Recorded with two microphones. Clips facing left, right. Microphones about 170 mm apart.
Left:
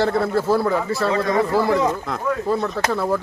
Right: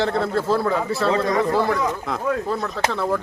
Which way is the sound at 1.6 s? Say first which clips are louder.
Left 3 dB; 5° left (ahead or behind).